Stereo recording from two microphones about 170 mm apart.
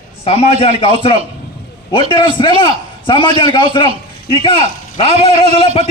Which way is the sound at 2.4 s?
30° left (ahead or behind).